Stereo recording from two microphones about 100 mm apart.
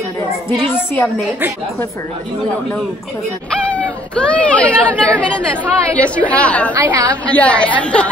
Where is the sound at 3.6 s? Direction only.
15° left (ahead or behind).